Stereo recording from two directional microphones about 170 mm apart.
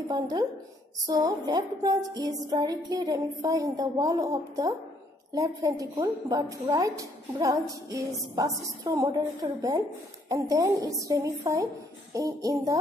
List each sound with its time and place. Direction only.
0.1 s a woman's voice: 20° right (ahead or behind)